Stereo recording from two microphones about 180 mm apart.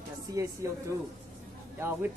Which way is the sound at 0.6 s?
15° right (ahead or behind).